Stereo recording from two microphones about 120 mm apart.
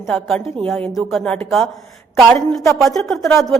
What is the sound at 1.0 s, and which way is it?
Speech, centre (ahead or behind).